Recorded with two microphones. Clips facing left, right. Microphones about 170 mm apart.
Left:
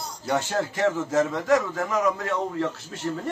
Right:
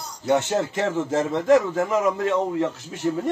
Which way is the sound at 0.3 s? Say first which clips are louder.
Right 4 dB; 20° right (ahead or behind).